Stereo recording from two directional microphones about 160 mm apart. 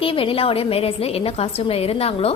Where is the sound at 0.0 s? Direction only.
35° left (ahead or behind).